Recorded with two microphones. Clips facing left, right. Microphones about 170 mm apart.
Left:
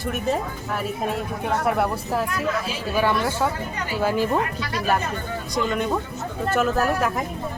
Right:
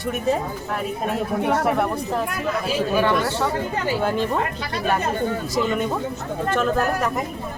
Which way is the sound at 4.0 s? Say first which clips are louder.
Left 4 dB; 5° left (ahead or behind).